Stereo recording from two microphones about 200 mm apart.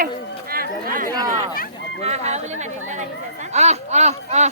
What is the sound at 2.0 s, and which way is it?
Speech, 35° right (ahead or behind).